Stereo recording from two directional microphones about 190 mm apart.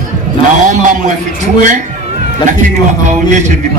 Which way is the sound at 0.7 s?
40° right (ahead or behind).